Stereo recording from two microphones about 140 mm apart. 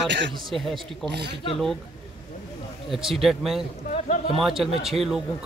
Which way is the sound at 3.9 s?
60° left (ahead or behind).